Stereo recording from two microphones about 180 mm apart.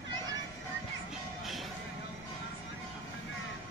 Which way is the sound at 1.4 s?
Centre (ahead or behind).